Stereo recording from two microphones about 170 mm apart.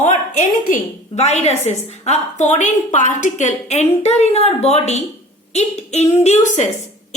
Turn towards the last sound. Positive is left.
turn(degrees=45)  # may be behind; listen again after turning